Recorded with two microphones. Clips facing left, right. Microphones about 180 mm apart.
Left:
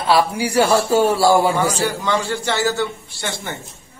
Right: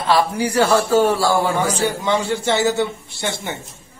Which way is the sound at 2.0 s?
20° right (ahead or behind).